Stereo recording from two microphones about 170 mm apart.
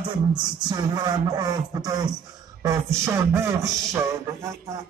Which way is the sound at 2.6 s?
15° right (ahead or behind).